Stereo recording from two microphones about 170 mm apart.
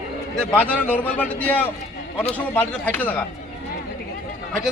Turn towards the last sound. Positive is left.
turn(degrees=10)  # may be behind; listen again after turning